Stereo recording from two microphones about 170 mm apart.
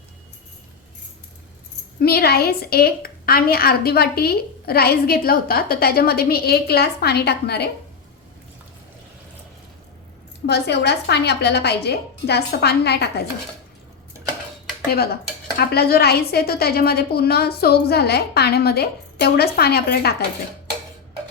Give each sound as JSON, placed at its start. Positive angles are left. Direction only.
{"t": 2.0, "sound": "a woman's voice", "side_deg": 70}
{"t": 10.4, "sound": "a woman's voice", "side_deg": 80}
{"t": 14.8, "sound": "a woman's voice", "side_deg": 65}